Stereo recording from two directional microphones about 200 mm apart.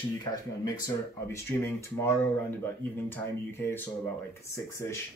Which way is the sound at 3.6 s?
10° left (ahead or behind).